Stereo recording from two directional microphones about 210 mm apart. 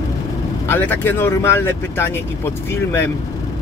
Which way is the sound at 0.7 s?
10° left (ahead or behind).